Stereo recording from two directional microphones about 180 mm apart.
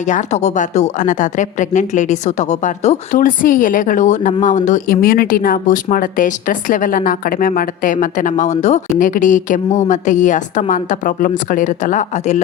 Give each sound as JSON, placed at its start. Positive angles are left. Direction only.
{"t": 0.1, "sound": "a woman's voice", "side_deg": 40}